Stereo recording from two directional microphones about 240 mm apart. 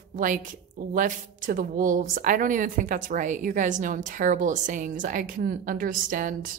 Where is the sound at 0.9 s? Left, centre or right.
Right.